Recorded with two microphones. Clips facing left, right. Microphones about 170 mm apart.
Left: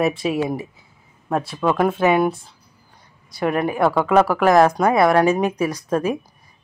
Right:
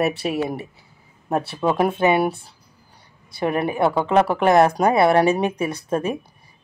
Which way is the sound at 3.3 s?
30° right (ahead or behind).